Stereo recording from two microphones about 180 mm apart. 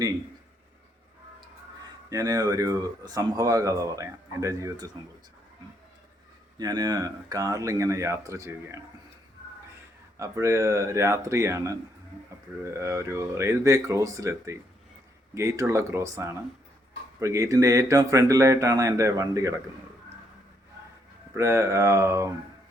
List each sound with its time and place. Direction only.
2.0 s speech: 20° right (ahead or behind)
6.6 s speech: 20° right (ahead or behind)
10.2 s speech: 15° right (ahead or behind)
21.3 s speech: 15° right (ahead or behind)